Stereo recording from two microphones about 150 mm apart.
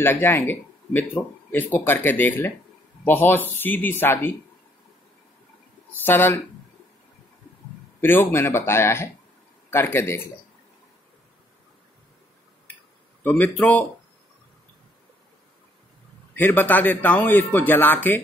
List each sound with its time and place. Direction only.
0.0 s speech: 15° left (ahead or behind)
6.0 s speech: 15° left (ahead or behind)
8.0 s speech: 15° left (ahead or behind)
13.2 s speech: 10° left (ahead or behind)
16.3 s speech: 10° left (ahead or behind)